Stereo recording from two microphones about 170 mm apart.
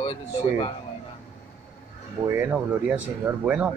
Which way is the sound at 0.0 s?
30° left (ahead or behind).